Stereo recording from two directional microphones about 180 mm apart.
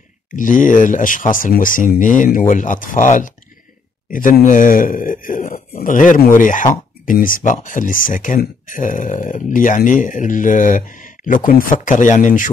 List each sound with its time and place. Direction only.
0.4 s speech: 45° left (ahead or behind)